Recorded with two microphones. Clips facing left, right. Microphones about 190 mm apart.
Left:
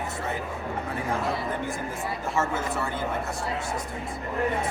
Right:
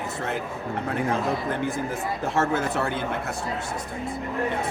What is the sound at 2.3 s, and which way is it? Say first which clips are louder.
Speech: right 4 dB; 65° right (ahead or behind).